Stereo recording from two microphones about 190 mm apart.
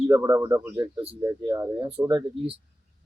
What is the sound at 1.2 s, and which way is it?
Speech, 15° right (ahead or behind).